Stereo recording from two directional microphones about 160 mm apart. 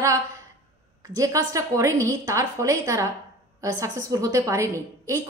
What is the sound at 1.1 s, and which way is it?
A woman's voice, 20° right (ahead or behind).